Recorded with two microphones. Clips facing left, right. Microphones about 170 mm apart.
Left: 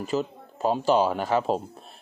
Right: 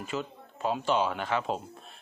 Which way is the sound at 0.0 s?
35° left (ahead or behind).